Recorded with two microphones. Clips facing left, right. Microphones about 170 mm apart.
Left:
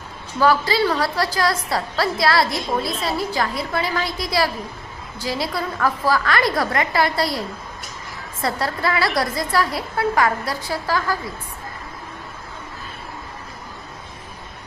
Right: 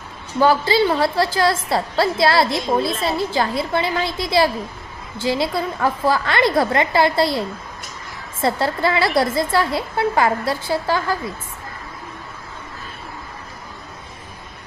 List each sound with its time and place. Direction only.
0.3 s a woman's voice: 25° right (ahead or behind)
2.9 s a woman's voice: centre (ahead or behind)
3.2 s a woman's voice: 25° right (ahead or behind)